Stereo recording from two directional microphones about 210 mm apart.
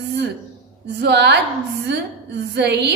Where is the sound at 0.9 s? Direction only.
55° right (ahead or behind).